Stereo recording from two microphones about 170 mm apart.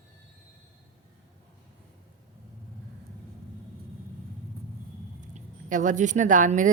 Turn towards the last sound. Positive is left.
turn(degrees=-50)  # may be behind; listen again after turning